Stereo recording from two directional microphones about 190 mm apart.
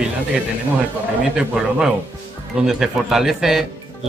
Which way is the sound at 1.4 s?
5° right (ahead or behind).